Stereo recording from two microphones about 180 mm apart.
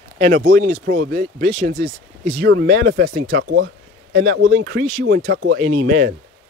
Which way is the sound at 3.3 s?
90° right.